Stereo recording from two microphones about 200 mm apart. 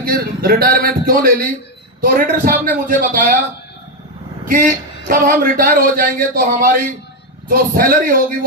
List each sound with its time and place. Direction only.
0.0 s speech: 45° right (ahead or behind)
4.4 s speech: 45° right (ahead or behind)